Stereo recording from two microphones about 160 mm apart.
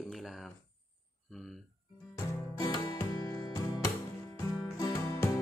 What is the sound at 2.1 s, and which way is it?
Music, 20° left (ahead or behind).